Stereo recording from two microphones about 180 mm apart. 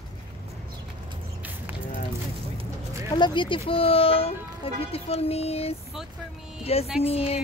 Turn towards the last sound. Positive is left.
turn(degrees=35)  # may be behind; listen again after turning